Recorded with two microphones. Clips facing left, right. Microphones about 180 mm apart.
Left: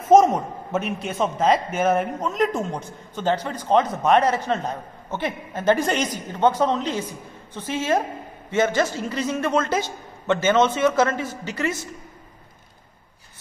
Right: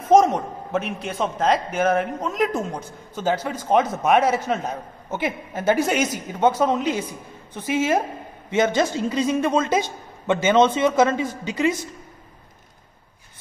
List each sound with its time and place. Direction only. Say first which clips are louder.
0.1 s a man's voice: left 1 dB; 5° left (ahead or behind); by 11.8 s 15° right (ahead or behind)